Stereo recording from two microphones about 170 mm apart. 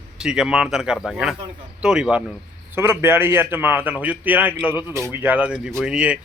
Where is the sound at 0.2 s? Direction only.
5° right (ahead or behind).